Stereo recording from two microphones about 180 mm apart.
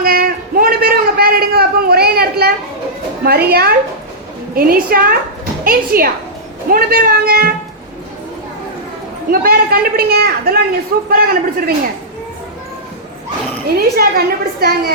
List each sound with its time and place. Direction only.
0.0 s a sound: 55° right (ahead or behind)
3.2 s a woman's voice: 60° right (ahead or behind)
9.3 s a woman's voice: 55° right (ahead or behind)
13.7 s a woman's voice: 60° right (ahead or behind)